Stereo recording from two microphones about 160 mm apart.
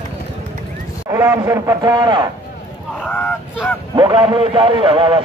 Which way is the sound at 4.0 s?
30° right (ahead or behind).